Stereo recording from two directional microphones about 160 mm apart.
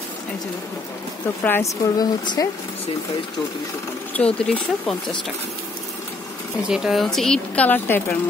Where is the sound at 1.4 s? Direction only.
15° left (ahead or behind).